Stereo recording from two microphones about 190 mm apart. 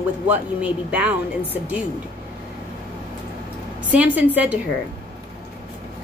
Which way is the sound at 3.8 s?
10° right (ahead or behind).